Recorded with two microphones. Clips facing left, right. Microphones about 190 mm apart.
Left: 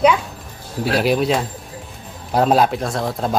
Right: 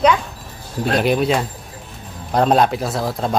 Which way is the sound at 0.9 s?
Centre (ahead or behind).